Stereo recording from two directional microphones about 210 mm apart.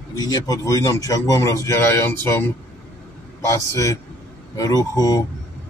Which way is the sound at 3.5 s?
15° left (ahead or behind).